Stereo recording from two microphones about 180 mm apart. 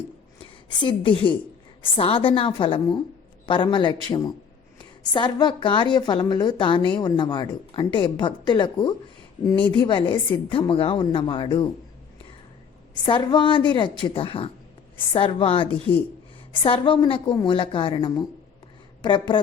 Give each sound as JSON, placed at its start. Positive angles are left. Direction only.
{"t": 0.8, "sound": "a woman's voice", "side_deg": 25}
{"t": 13.1, "sound": "a woman's voice", "side_deg": 25}